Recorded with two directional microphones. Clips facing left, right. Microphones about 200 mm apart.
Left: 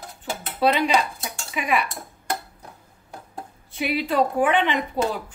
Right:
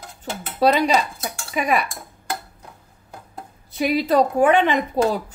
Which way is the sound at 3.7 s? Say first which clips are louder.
Right 5 dB; 40° right (ahead or behind).